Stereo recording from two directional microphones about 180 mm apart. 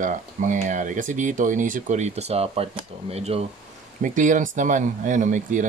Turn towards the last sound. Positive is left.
turn(degrees=-45)  # may be behind; listen again after turning